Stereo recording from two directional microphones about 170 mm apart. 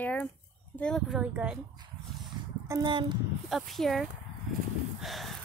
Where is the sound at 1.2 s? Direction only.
10° right (ahead or behind).